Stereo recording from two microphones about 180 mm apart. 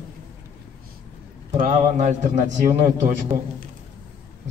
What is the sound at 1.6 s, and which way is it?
Speech, 45° right (ahead or behind).